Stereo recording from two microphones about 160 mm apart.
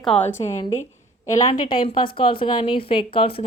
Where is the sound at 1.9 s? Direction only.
30° left (ahead or behind).